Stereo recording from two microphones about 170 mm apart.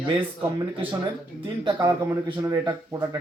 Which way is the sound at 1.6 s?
20° right (ahead or behind).